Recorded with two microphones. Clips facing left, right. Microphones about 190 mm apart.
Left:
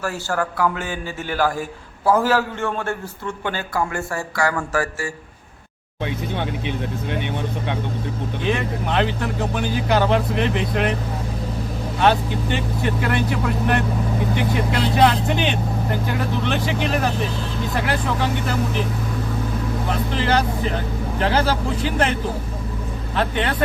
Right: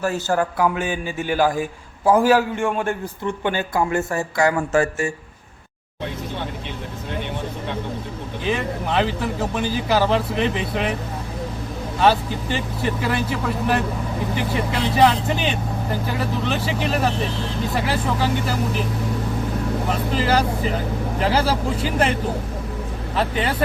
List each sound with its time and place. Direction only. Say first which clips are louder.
0.0 s a man's voice: right 3 dB; 20° right (ahead or behind)
8.4 s speech: even; 5° right (ahead or behind)
12.8 s a man's voice: left 1 dB; centre (ahead or behind)
20.1 s a man's voice: right 1 dB; 5° right (ahead or behind)
23.1 s a man's voice: even; 5° right (ahead or behind)